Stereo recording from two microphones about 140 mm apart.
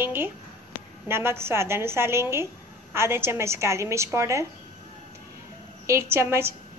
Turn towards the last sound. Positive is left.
turn(degrees=-20)  # may be behind; listen again after turning